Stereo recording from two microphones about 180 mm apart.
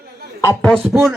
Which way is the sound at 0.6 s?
5° left (ahead or behind).